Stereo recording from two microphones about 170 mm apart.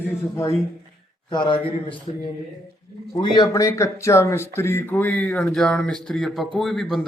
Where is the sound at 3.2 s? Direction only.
25° left (ahead or behind).